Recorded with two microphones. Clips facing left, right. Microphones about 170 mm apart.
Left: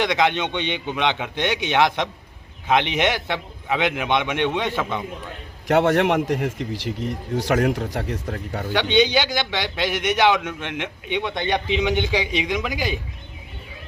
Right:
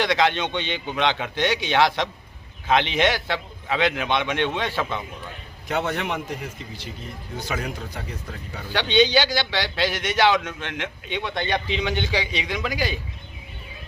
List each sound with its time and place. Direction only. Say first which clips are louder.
0.0 s a man's voice: left 1 dB; 15° left (ahead or behind)
5.6 s a man's voice: left 8 dB; 80° left
8.7 s a man's voice: even; 15° left (ahead or behind)